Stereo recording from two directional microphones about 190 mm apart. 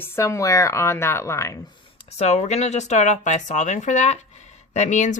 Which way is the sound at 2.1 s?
35° left (ahead or behind).